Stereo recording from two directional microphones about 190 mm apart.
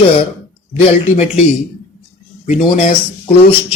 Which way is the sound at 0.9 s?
35° left (ahead or behind).